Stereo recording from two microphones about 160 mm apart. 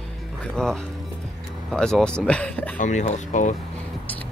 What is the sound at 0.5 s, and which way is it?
Speech, 5° left (ahead or behind).